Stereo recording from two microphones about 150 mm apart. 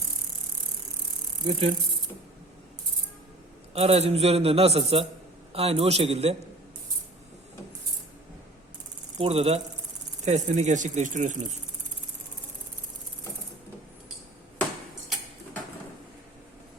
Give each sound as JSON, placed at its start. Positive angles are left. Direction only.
{"t": 1.5, "sound": "speech", "side_deg": -40}
{"t": 3.8, "sound": "a man's voice", "side_deg": -45}
{"t": 9.1, "sound": "a man's voice", "side_deg": -40}